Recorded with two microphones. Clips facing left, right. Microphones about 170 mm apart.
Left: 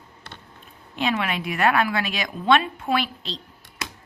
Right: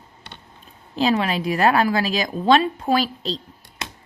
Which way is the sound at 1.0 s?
35° right (ahead or behind).